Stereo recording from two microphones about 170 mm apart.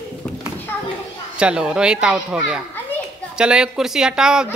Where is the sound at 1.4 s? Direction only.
5° right (ahead or behind).